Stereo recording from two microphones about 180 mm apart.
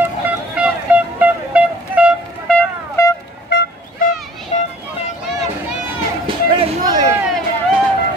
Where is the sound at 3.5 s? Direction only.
70° left (ahead or behind).